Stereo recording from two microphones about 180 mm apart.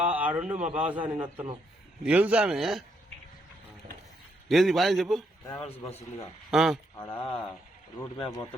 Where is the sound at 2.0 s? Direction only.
5° right (ahead or behind).